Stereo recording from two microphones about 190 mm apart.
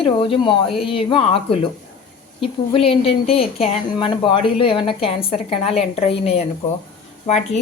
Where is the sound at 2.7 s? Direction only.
30° left (ahead or behind).